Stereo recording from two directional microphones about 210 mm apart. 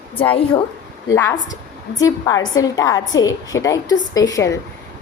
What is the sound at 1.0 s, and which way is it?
A woman's voice, 15° left (ahead or behind).